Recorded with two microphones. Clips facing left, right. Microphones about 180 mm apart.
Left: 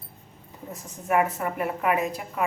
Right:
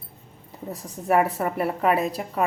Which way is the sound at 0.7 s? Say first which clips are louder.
Right 3 dB; 35° right (ahead or behind).